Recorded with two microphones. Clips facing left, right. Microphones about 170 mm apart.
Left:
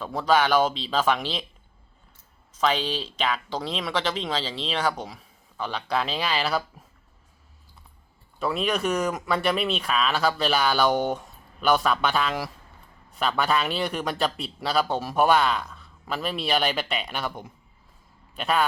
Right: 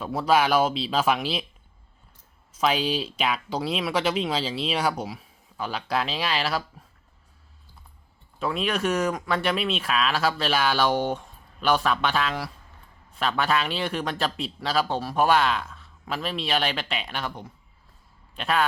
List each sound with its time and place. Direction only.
0.0 s speech: 5° right (ahead or behind)
2.5 s speech: 10° right (ahead or behind)
8.4 s a man's voice: centre (ahead or behind)